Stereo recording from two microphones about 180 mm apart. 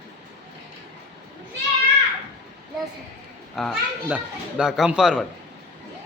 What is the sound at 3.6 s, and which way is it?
Speech, centre (ahead or behind).